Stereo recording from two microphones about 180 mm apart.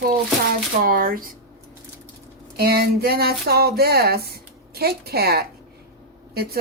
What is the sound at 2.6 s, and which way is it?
Speech, 60° right (ahead or behind).